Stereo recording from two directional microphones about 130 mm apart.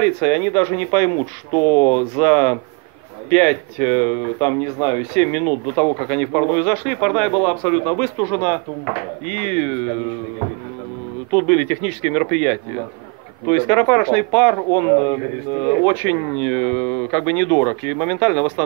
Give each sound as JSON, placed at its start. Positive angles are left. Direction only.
{"t": 0.0, "sound": "speech", "side_deg": 20}
{"t": 2.1, "sound": "speech", "side_deg": 10}
{"t": 8.0, "sound": "speech", "side_deg": 15}
{"t": 11.3, "sound": "speech", "side_deg": 5}
{"t": 13.5, "sound": "speech", "side_deg": 30}
{"t": 14.7, "sound": "speech", "side_deg": 30}
{"t": 16.3, "sound": "speech", "side_deg": 10}